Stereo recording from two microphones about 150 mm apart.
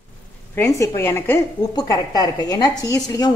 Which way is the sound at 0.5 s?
20° left (ahead or behind).